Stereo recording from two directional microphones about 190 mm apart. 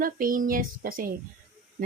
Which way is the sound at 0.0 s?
45° right (ahead or behind).